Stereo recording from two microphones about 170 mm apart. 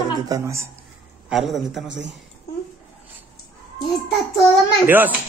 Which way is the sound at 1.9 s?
90° right.